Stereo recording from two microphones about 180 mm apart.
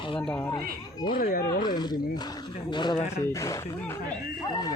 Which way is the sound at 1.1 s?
55° left (ahead or behind).